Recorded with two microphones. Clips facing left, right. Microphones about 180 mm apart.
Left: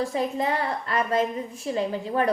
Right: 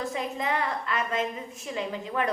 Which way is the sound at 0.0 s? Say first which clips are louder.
Left 5 dB; 35° left (ahead or behind).